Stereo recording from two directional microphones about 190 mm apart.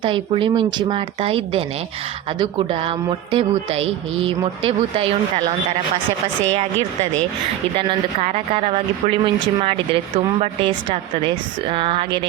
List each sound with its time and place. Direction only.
0.0 s speech: 25° right (ahead or behind)
7.8 s speech: 30° right (ahead or behind)